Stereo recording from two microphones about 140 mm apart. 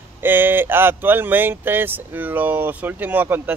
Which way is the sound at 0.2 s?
15° right (ahead or behind).